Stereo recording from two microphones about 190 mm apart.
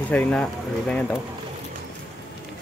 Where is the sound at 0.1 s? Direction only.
5° left (ahead or behind).